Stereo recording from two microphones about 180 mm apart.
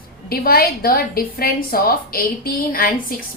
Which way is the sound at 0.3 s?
55° left (ahead or behind).